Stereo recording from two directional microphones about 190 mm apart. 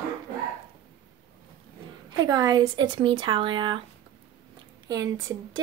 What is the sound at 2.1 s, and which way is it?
Speech, 20° right (ahead or behind).